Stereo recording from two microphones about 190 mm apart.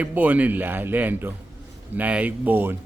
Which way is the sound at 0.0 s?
10° right (ahead or behind).